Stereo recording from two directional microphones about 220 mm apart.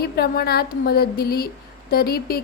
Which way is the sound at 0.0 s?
45° left (ahead or behind).